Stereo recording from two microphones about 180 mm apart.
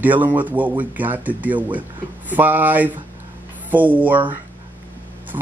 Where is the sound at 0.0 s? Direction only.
10° right (ahead or behind).